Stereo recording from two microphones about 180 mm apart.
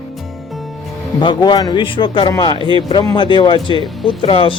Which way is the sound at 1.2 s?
25° left (ahead or behind).